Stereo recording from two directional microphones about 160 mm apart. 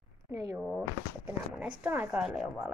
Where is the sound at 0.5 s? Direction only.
Centre (ahead or behind).